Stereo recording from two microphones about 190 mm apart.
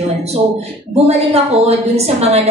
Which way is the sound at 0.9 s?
35° right (ahead or behind).